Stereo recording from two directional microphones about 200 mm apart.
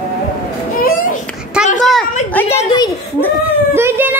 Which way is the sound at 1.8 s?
Centre (ahead or behind).